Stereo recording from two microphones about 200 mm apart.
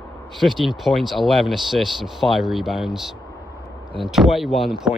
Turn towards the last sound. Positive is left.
turn(degrees=0)  # may be behind; listen again after turning